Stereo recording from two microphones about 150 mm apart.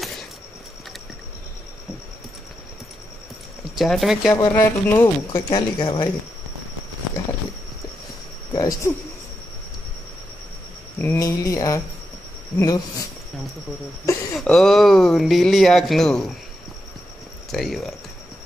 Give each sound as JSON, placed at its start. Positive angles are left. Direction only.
{"t": 3.7, "sound": "speech", "side_deg": 0}
{"t": 4.3, "sound": "speech", "side_deg": 25}
{"t": 5.3, "sound": "speech", "side_deg": 30}
{"t": 8.5, "sound": "speech", "side_deg": 25}
{"t": 11.0, "sound": "speech", "side_deg": 20}
{"t": 14.4, "sound": "speech", "side_deg": 5}
{"t": 17.5, "sound": "speech", "side_deg": 0}